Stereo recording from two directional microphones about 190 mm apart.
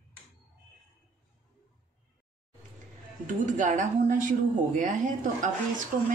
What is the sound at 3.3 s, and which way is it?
A woman's voice, 40° right (ahead or behind).